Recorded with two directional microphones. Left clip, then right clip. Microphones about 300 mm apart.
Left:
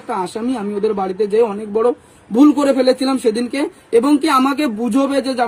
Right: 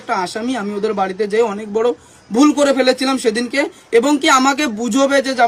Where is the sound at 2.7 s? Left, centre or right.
Centre.